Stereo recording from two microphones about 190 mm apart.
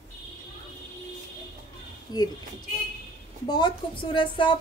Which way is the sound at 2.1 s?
20° left (ahead or behind).